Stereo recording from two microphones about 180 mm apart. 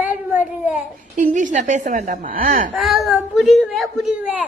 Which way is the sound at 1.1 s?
45° right (ahead or behind).